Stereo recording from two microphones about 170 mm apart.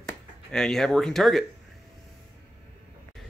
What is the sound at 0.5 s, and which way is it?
Speech, 5° left (ahead or behind).